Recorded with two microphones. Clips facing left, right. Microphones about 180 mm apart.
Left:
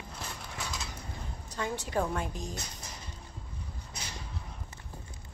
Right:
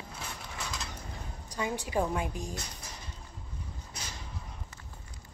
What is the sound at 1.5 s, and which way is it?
Speech, 10° right (ahead or behind).